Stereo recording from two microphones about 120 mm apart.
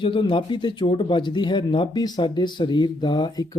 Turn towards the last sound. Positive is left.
turn(degrees=35)  # may be behind; listen again after turning